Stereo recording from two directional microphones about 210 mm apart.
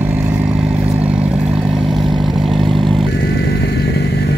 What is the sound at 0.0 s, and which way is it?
Vehicle, 10° right (ahead or behind).